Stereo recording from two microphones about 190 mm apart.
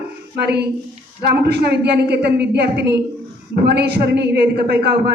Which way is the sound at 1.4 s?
60° right (ahead or behind).